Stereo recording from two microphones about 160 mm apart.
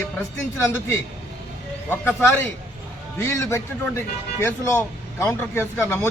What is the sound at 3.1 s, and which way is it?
A man's voice, 15° left (ahead or behind).